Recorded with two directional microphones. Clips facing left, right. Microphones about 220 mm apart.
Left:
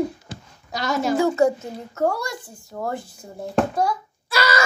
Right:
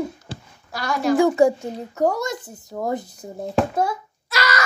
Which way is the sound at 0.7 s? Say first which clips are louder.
Right 1 dB; 20° left (ahead or behind).